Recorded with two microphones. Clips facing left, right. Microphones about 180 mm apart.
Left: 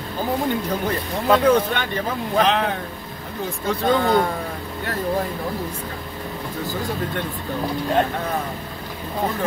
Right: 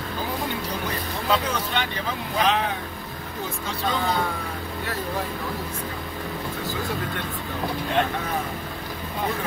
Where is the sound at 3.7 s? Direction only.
55° left (ahead or behind).